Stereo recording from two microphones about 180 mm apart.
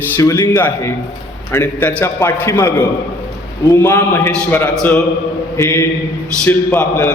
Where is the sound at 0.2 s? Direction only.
15° left (ahead or behind).